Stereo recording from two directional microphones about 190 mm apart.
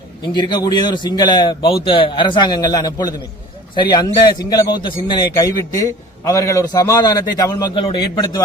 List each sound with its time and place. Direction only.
0.2 s a man's voice: 25° left (ahead or behind)